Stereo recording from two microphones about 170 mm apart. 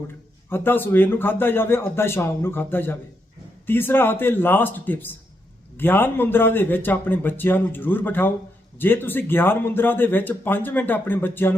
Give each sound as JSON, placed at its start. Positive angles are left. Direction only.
{"t": 0.5, "sound": "speech", "side_deg": 10}